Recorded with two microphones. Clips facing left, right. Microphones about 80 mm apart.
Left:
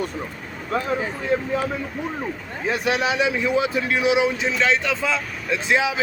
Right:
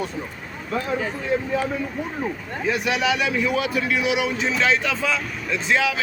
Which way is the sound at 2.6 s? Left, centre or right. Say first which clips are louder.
Even; left.